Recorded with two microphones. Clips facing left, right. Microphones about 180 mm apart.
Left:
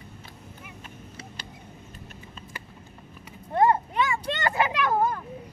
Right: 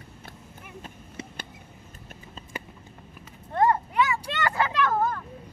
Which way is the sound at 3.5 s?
20° left (ahead or behind).